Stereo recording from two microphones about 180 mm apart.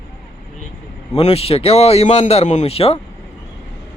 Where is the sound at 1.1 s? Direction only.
35° left (ahead or behind).